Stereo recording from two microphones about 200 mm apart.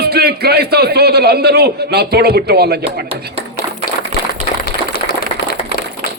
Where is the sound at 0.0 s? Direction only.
50° right (ahead or behind).